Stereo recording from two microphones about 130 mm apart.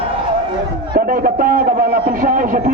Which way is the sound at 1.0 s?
90° right.